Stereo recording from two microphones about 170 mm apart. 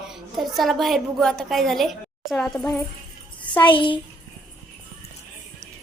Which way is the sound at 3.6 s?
30° left (ahead or behind).